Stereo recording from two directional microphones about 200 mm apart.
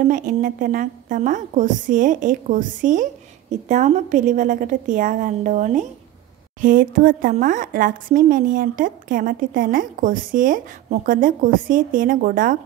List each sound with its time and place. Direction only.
0.0 s a woman's voice: 40° right (ahead or behind)